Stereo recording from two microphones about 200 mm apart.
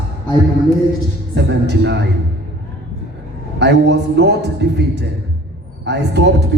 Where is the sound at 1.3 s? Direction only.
60° right (ahead or behind).